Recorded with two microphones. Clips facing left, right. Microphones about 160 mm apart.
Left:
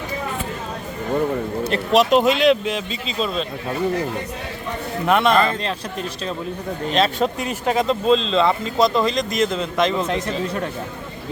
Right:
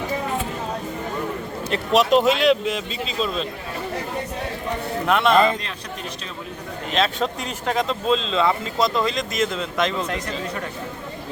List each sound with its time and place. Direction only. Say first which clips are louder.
1.7 s speech: left 1 dB; centre (ahead or behind)
5.0 s speech: left 1 dB; centre (ahead or behind)
6.9 s speech: left 3 dB; 5° left (ahead or behind)
10.1 s speech: left 4 dB; 25° left (ahead or behind)